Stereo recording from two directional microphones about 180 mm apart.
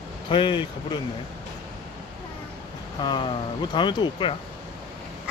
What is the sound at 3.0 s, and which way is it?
Speech, 25° left (ahead or behind).